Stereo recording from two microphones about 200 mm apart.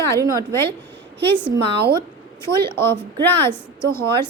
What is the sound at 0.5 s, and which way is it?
Speech, 15° left (ahead or behind).